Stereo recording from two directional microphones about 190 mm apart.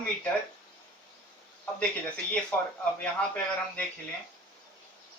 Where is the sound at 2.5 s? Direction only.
10° left (ahead or behind).